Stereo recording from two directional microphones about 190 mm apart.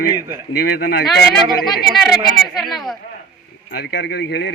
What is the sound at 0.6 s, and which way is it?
Speech, 55° left (ahead or behind).